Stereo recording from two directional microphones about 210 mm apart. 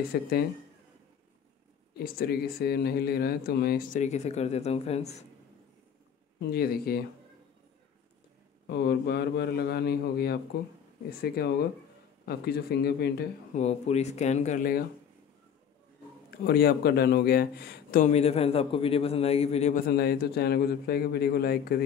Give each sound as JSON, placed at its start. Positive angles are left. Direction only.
{"t": 0.1, "sound": "speech", "side_deg": 45}
{"t": 2.0, "sound": "speech", "side_deg": 45}
{"t": 6.5, "sound": "speech", "side_deg": 45}
{"t": 8.6, "sound": "speech", "side_deg": 50}
{"t": 13.6, "sound": "speech", "side_deg": 30}
{"t": 16.3, "sound": "speech", "side_deg": 50}